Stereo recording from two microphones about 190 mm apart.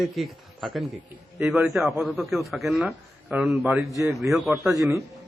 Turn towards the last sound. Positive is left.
turn(degrees=-15)  # may be behind; listen again after turning